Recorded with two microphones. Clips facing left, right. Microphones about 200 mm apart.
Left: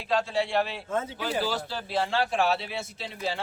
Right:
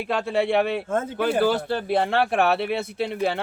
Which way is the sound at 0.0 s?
60° right (ahead or behind).